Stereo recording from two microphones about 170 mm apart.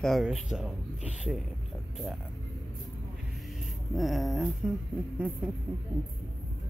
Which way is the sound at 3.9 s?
Centre (ahead or behind).